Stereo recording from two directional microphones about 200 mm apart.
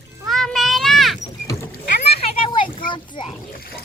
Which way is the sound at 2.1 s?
25° left (ahead or behind).